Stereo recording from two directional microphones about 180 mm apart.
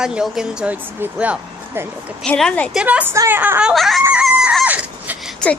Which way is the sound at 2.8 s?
10° right (ahead or behind).